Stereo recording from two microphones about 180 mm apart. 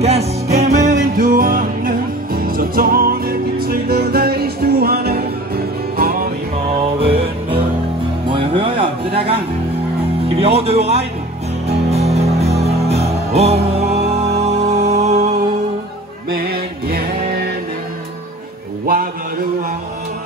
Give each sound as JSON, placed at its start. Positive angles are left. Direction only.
{"t": 0.0, "sound": "music", "side_deg": -35}
{"t": 6.8, "sound": "music", "side_deg": -30}
{"t": 10.2, "sound": "speech", "side_deg": -35}
{"t": 11.6, "sound": "music", "side_deg": -35}
{"t": 16.3, "sound": "music", "side_deg": -60}